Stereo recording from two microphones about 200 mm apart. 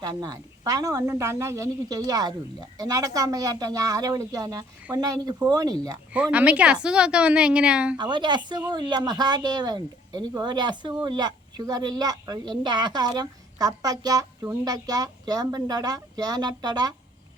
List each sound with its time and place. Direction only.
0.0 s speech: 20° right (ahead or behind)
6.1 s a woman's voice: 5° right (ahead or behind)
7.9 s speech: 20° right (ahead or behind)